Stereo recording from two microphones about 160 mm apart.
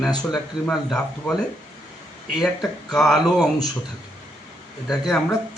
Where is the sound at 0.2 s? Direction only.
Centre (ahead or behind).